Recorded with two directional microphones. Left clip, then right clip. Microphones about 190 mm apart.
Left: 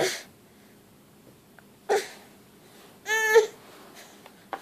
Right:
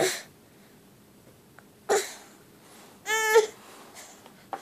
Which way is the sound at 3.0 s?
15° right (ahead or behind).